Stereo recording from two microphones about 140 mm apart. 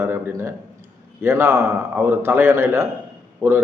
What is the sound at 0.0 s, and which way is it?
A man's voice, 15° right (ahead or behind).